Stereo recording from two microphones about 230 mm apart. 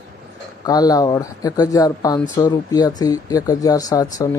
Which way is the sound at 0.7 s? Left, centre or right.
Centre.